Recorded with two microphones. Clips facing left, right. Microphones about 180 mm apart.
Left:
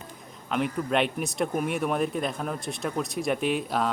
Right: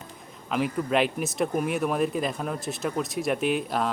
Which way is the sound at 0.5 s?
Centre (ahead or behind).